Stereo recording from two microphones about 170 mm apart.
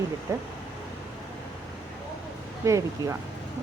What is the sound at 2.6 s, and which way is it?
Speech, 15° right (ahead or behind).